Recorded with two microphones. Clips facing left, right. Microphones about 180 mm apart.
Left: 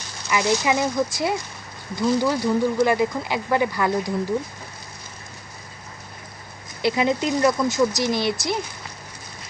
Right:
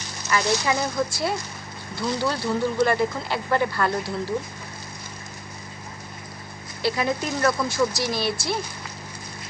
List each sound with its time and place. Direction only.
0.3 s speech: 15° left (ahead or behind)
6.8 s speech: 20° left (ahead or behind)